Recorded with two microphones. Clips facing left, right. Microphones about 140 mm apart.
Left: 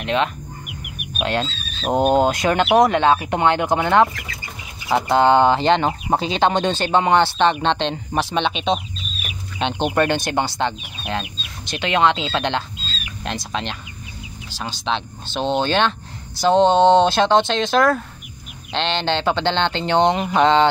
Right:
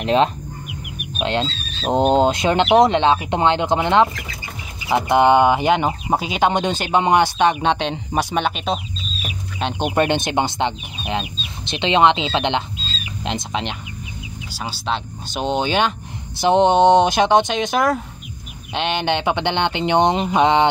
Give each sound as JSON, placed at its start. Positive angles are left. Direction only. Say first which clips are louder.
{"t": 0.0, "sound": "speech", "louder": "right 4 dB", "side_deg": -35}
{"t": 1.2, "sound": "speech", "louder": "right 1 dB", "side_deg": -20}